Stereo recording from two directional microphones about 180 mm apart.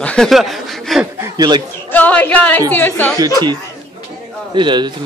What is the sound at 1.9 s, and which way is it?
Speech, 10° left (ahead or behind).